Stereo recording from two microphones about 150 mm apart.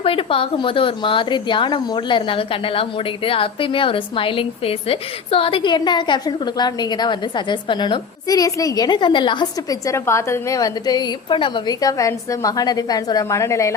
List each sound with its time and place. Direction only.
0.0 s a woman's voice: 35° left (ahead or behind); by 13.7 s 20° left (ahead or behind)